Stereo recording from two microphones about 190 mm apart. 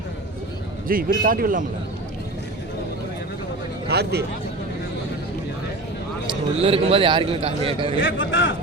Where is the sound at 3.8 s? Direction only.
60° right (ahead or behind).